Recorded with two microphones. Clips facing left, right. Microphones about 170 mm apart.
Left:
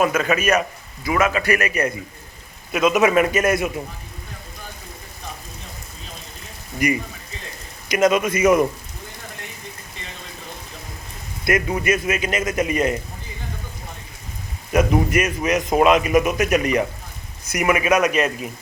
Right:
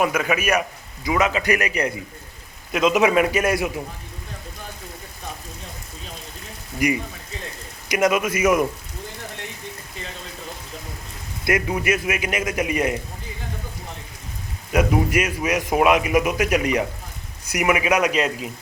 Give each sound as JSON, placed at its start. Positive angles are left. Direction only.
{"t": 0.0, "sound": "a man's voice", "side_deg": -15}
{"t": 6.7, "sound": "a man's voice", "side_deg": -10}
{"t": 11.4, "sound": "a man's voice", "side_deg": -10}
{"t": 14.7, "sound": "a man's voice", "side_deg": -10}